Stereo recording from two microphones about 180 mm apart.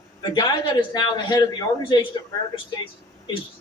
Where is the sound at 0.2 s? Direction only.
25° left (ahead or behind).